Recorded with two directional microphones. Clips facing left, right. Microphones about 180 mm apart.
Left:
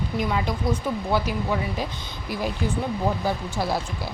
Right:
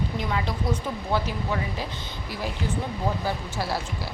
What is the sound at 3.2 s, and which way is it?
Speech, 15° left (ahead or behind).